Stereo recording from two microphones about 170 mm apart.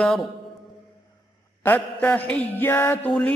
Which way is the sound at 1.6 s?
10° left (ahead or behind).